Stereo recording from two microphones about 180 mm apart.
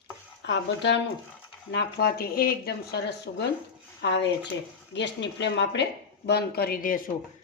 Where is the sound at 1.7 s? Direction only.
65° left (ahead or behind).